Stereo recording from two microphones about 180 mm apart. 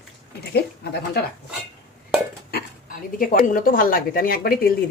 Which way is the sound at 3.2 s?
50° left (ahead or behind).